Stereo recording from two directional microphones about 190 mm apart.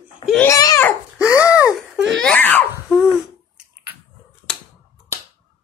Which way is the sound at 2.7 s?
5° right (ahead or behind).